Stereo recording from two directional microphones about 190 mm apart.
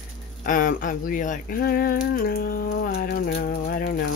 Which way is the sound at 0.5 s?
45° left (ahead or behind).